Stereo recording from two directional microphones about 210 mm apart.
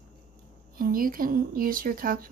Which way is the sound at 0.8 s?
40° right (ahead or behind).